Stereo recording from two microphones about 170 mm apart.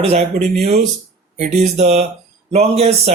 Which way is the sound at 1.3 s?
40° right (ahead or behind).